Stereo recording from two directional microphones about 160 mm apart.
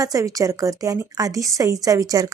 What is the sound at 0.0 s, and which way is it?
A woman's voice, 20° right (ahead or behind).